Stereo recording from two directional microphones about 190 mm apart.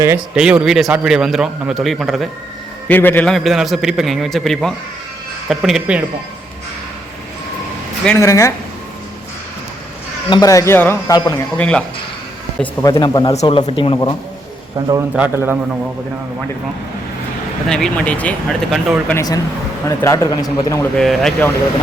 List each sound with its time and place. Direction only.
0.3 s a man's voice: 5° right (ahead or behind)
2.8 s a man's voice: 10° left (ahead or behind)
8.0 s speech: 10° left (ahead or behind)
10.2 s speech: 20° left (ahead or behind)
12.8 s speech: 20° left (ahead or behind)
13.3 s speech: 35° left (ahead or behind)
14.8 s a man's voice: 20° right (ahead or behind)
15.1 s a man's voice: 10° right (ahead or behind)
17.7 s a man's voice: 5° left (ahead or behind)
19.1 s speech: 20° left (ahead or behind)
20.9 s a man's voice: centre (ahead or behind)